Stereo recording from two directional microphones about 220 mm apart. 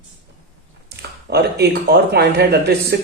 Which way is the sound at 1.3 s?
45° right (ahead or behind).